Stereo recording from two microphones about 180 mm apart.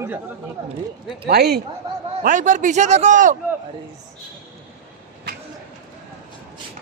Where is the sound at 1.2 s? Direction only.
60° right (ahead or behind).